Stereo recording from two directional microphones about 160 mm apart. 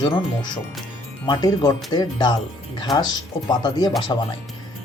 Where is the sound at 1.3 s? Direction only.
25° left (ahead or behind).